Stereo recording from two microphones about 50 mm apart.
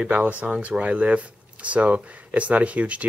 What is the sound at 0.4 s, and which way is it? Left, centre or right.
Speech, right.